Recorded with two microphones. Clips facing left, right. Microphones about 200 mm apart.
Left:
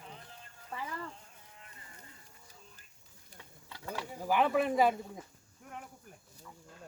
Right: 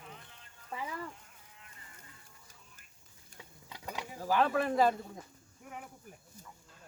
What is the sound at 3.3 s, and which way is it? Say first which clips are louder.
Stir: right 1 dB; 15° right (ahead or behind).